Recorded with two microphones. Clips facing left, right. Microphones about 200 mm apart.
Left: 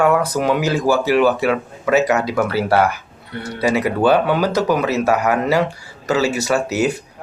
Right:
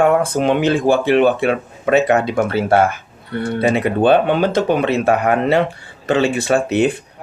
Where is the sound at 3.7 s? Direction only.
25° right (ahead or behind).